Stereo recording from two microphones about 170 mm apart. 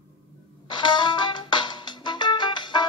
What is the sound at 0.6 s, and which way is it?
Music, 25° left (ahead or behind).